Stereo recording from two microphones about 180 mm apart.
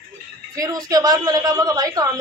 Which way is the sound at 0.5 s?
20° right (ahead or behind).